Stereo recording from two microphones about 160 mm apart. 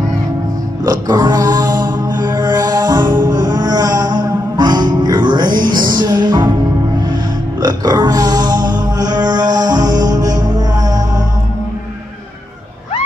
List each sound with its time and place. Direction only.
0.8 s music: 25° right (ahead or behind)
7.6 s a sound: 25° right (ahead or behind)
9.6 s music: 25° right (ahead or behind)